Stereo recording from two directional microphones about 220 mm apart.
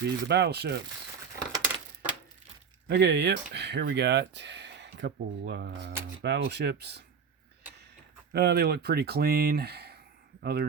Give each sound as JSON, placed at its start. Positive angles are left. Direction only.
{"t": 0.0, "sound": "speech", "side_deg": -50}
{"t": 2.8, "sound": "speech", "side_deg": -50}
{"t": 8.3, "sound": "speech", "side_deg": -45}